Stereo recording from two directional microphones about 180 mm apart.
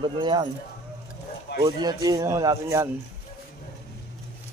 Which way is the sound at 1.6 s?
25° right (ahead or behind).